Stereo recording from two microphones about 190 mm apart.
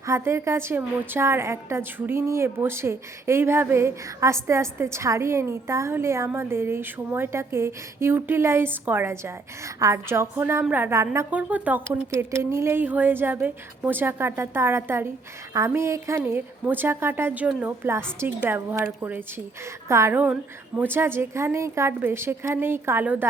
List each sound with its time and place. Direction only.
0.0 s a woman's voice: 15° right (ahead or behind)